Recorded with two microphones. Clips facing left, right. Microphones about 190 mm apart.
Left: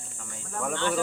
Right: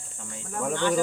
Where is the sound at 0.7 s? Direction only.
15° right (ahead or behind).